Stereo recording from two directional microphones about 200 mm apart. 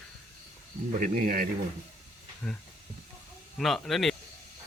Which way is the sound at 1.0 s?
45° right (ahead or behind).